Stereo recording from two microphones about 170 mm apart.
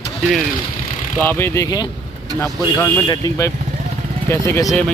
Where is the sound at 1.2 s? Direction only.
10° left (ahead or behind).